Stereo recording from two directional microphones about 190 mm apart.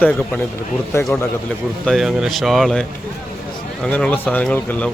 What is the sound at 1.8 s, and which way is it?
Speech, centre (ahead or behind).